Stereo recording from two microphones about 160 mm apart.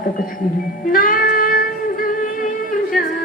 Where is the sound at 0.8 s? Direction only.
60° left (ahead or behind).